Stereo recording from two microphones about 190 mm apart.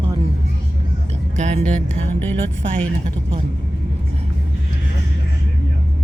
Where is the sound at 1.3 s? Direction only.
40° right (ahead or behind).